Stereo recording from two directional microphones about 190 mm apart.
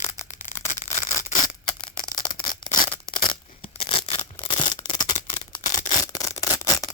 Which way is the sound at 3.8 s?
25° left (ahead or behind).